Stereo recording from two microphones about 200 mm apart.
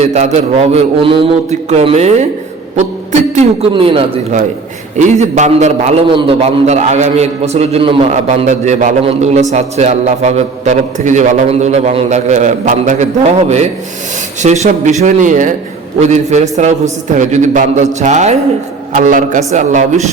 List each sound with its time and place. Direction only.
0.0 s a man's voice: 35° right (ahead or behind)